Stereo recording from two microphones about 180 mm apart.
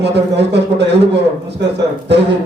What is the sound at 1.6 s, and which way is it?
Speech, 75° right (ahead or behind).